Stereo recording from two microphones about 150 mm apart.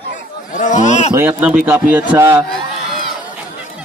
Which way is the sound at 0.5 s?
55° left (ahead or behind).